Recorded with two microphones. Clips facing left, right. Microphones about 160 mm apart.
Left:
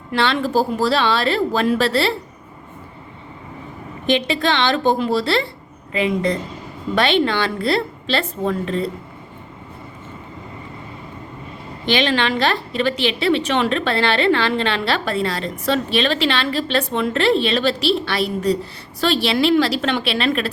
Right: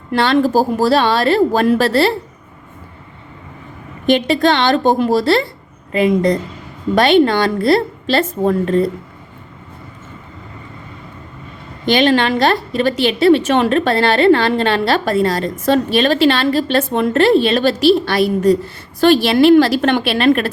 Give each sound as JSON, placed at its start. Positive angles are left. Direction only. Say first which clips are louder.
{"t": 0.1, "sound": "a woman's voice", "louder": "right 5 dB", "side_deg": -45}
{"t": 4.0, "sound": "a woman's voice", "louder": "right 6 dB", "side_deg": -45}
{"t": 11.9, "sound": "a woman's voice", "louder": "right 5 dB", "side_deg": -45}